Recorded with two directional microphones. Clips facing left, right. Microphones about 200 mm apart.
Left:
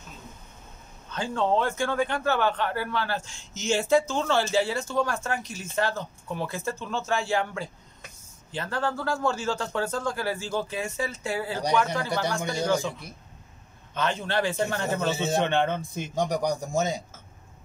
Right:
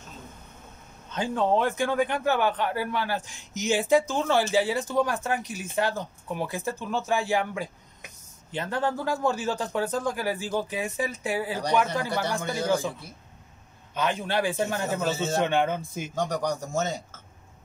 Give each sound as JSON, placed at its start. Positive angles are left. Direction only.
{"t": 1.1, "sound": "speech", "side_deg": -20}
{"t": 13.9, "sound": "speech", "side_deg": -15}
{"t": 16.2, "sound": "a man's voice", "side_deg": 10}